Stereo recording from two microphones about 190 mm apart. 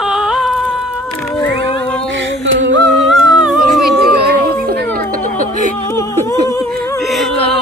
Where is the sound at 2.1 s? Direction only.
70° right (ahead or behind).